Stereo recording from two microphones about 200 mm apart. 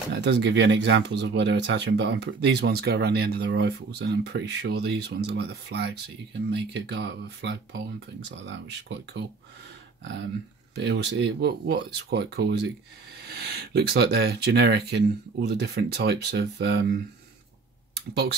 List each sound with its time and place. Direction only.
0.1 s speech: 60° right (ahead or behind)
10.8 s speech: 55° right (ahead or behind)